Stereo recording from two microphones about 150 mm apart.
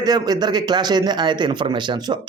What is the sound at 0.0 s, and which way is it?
Speech, 25° right (ahead or behind).